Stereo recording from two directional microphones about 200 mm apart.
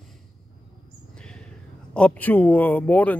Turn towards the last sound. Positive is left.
turn(degrees=10)  # may be behind; listen again after turning